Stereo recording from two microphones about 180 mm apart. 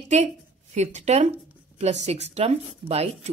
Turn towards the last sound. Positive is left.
turn(degrees=-35)  # may be behind; listen again after turning